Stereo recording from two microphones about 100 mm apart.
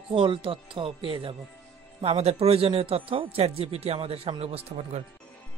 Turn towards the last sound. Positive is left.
turn(degrees=-85)